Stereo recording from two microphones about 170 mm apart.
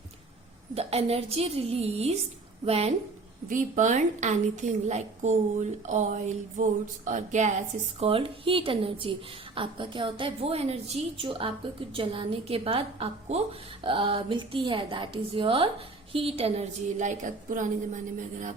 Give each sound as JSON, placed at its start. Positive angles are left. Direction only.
{"t": 0.7, "sound": "a woman's voice", "side_deg": -35}
{"t": 3.5, "sound": "a woman's voice", "side_deg": -50}
{"t": 7.9, "sound": "a woman's voice", "side_deg": -35}